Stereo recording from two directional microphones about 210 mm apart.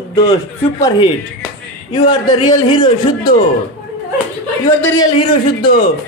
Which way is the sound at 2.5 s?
20° left (ahead or behind).